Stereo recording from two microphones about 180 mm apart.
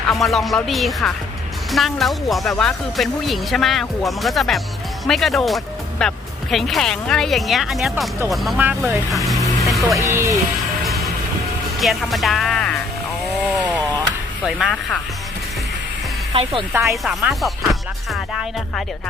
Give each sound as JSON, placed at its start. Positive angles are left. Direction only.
{"t": 0.1, "sound": "speech", "side_deg": 0}
{"t": 9.0, "sound": "speech", "side_deg": 0}
{"t": 9.6, "sound": "music", "side_deg": 0}
{"t": 10.1, "sound": "speech", "side_deg": -15}
{"t": 11.8, "sound": "speech", "side_deg": 0}
{"t": 13.6, "sound": "a sound", "side_deg": -5}
{"t": 14.4, "sound": "speech", "side_deg": 0}
{"t": 16.3, "sound": "speech", "side_deg": -30}
{"t": 16.8, "sound": "speech", "side_deg": 0}